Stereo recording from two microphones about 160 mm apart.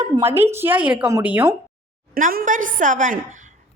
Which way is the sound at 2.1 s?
55° right (ahead or behind).